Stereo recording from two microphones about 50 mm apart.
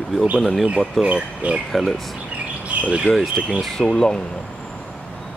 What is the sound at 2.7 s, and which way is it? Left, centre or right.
Bird, right.